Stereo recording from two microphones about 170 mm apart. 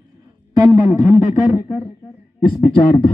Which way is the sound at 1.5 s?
20° left (ahead or behind).